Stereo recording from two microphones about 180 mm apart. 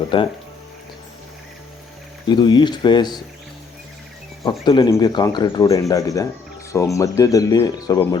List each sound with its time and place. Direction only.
0.1 s speech: 25° left (ahead or behind)
2.2 s speech: 25° left (ahead or behind)
4.6 s speech: 25° left (ahead or behind)